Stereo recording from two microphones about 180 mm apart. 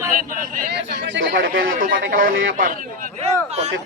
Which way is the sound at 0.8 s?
70° right (ahead or behind).